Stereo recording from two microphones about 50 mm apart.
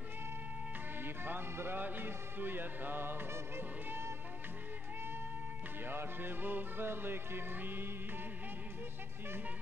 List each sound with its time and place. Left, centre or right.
1.0 s music: right
5.9 s music: right